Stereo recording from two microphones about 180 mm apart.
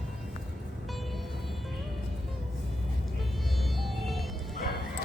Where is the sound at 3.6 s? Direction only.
Centre (ahead or behind).